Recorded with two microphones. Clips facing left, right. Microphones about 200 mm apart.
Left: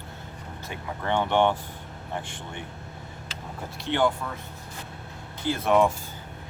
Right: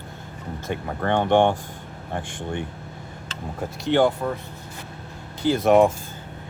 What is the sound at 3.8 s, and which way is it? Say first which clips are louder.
Speech: right 5 dB; 40° right (ahead or behind).